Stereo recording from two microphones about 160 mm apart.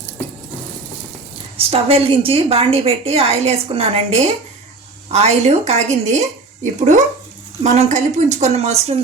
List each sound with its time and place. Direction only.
1.5 s a woman's voice: 35° right (ahead or behind)